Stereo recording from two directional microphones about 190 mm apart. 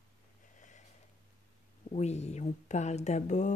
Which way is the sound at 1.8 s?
35° left (ahead or behind).